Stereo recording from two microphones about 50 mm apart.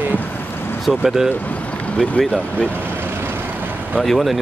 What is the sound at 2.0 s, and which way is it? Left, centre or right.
Speech, centre.